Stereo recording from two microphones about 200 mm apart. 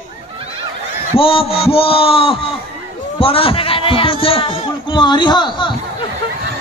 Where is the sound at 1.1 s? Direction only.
30° left (ahead or behind).